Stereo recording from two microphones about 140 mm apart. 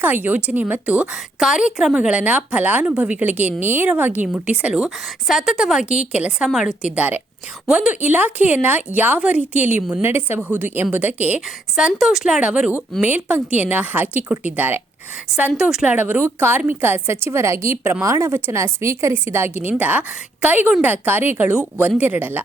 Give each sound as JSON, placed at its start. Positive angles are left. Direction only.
{"t": 0.0, "sound": "a woman's voice", "side_deg": -15}